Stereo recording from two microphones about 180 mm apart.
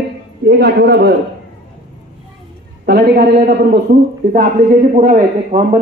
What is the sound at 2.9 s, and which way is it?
A man's voice, 65° right (ahead or behind).